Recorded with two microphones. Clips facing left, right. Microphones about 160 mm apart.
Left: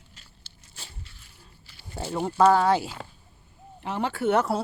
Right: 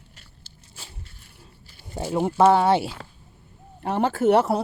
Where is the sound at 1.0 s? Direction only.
45° right (ahead or behind).